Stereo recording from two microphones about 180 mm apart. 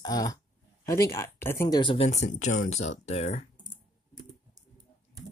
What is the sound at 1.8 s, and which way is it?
Speech, 30° left (ahead or behind).